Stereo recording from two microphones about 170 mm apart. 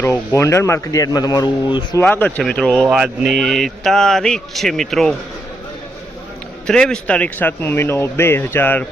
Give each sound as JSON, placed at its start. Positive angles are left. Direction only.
{"t": 0.0, "sound": "speech", "side_deg": 15}
{"t": 2.0, "sound": "speech", "side_deg": 10}
{"t": 6.7, "sound": "speech", "side_deg": 5}